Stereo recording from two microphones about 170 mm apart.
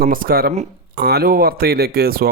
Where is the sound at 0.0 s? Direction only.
60° right (ahead or behind).